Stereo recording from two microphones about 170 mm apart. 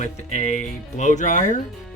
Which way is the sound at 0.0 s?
45° left (ahead or behind).